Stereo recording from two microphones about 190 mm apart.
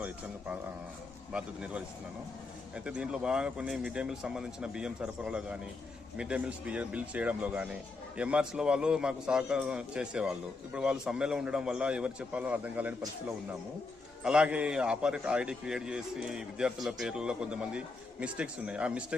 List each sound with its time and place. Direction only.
0.0 s a man's voice: 10° right (ahead or behind)
14.3 s a man's voice: 5° right (ahead or behind)